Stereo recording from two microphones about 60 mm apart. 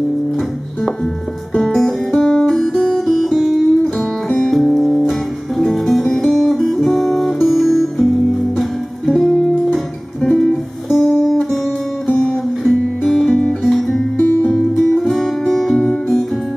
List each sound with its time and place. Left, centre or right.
1.7 s music: centre
3.8 s music: centre
4.5 s music: centre
12.6 s music: centre
14.1 s music: left
14.8 s music: centre